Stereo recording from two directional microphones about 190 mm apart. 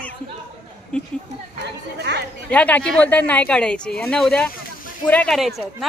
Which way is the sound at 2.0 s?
65° right (ahead or behind).